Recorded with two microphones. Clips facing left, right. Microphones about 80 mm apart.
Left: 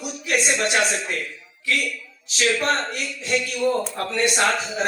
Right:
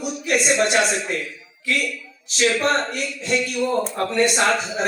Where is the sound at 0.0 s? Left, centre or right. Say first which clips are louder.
Right 2 dB; right.